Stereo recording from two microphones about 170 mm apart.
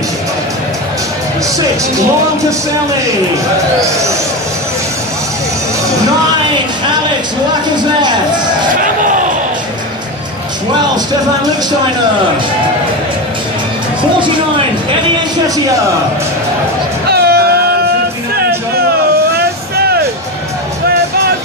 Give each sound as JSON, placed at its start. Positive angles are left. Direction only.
{"t": 8.8, "sound": "a sound", "side_deg": -50}
{"t": 15.0, "sound": "a man's voice", "side_deg": -20}
{"t": 17.1, "sound": "music", "side_deg": -70}